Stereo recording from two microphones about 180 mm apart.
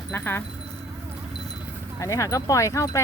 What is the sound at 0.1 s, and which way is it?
Speech, 10° left (ahead or behind).